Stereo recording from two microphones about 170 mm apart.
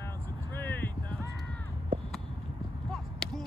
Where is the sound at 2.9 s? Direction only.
Centre (ahead or behind).